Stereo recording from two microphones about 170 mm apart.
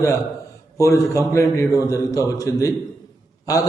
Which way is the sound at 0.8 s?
15° left (ahead or behind).